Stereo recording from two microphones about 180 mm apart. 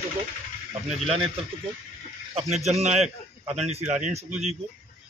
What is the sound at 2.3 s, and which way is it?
A man's voice, 35° right (ahead or behind).